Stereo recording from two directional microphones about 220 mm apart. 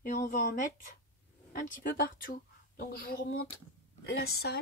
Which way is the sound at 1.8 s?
40° left (ahead or behind).